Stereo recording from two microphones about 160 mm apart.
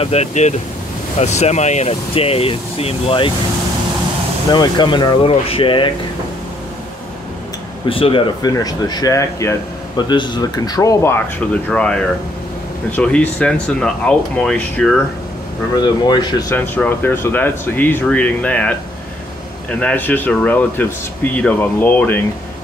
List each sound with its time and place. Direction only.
0.0 s speech: 40° left (ahead or behind)
4.5 s speech: 30° left (ahead or behind)
7.9 s speech: 35° left (ahead or behind); by 15.0 s 5° left (ahead or behind)
15.7 s speech: 25° left (ahead or behind)
16.5 s speech: 10° left (ahead or behind)